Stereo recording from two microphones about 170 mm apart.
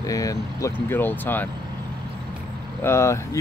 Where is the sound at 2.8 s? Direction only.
15° left (ahead or behind).